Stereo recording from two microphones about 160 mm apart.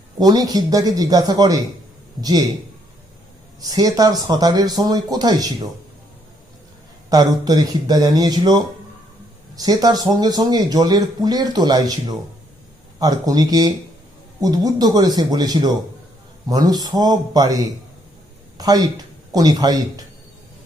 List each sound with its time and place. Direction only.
0.2 s speech: 25° right (ahead or behind)
3.6 s speech: 25° right (ahead or behind)
7.1 s speech: 25° right (ahead or behind)